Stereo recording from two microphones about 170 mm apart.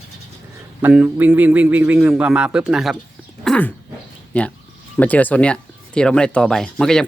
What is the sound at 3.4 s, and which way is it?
Dog, 5° left (ahead or behind).